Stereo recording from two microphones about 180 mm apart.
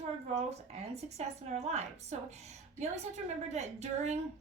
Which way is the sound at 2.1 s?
40° right (ahead or behind).